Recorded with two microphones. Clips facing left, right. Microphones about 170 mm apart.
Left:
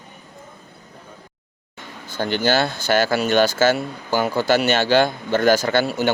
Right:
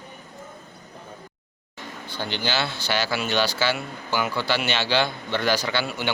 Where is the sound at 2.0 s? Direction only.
45° left (ahead or behind).